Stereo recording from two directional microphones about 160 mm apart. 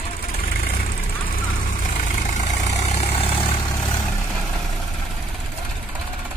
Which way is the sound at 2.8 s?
40° left (ahead or behind).